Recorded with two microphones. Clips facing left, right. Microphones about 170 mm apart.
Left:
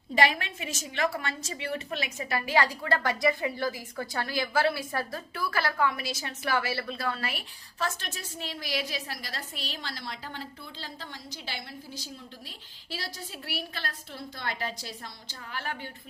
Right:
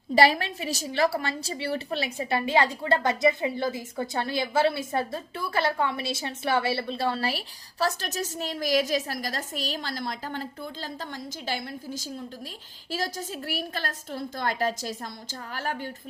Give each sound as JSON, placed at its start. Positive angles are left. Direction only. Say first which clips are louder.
{"t": 0.1, "sound": "a woman's voice", "louder": "right 5 dB", "side_deg": -35}